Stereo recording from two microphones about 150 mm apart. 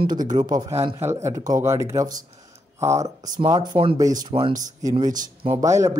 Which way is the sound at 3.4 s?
30° right (ahead or behind).